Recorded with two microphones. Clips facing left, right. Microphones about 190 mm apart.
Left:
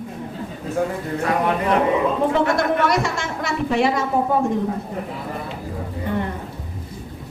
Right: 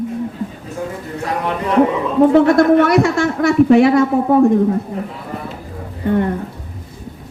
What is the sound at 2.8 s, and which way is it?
Speech, 60° right (ahead or behind).